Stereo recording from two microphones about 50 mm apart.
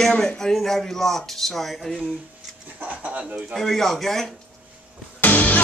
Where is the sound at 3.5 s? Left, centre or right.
Centre.